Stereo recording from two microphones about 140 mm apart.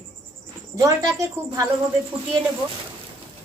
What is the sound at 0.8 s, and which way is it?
Speech, 25° right (ahead or behind).